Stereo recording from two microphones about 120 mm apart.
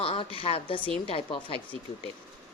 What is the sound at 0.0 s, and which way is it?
A woman's voice, 50° left (ahead or behind).